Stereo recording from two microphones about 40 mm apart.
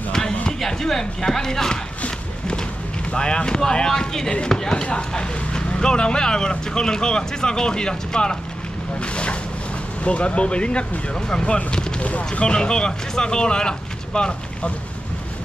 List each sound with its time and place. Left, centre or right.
0.7 s speech: centre
2.0 s a sound: left
3.1 s speech: left
9.0 s speech: left
12.3 s speech: left